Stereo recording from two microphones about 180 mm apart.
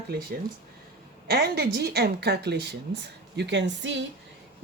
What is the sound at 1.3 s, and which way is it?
A woman's voice, 65° right (ahead or behind).